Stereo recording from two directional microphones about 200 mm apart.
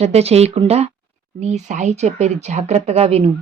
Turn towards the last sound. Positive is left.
turn(degrees=-30)  # may be behind; listen again after turning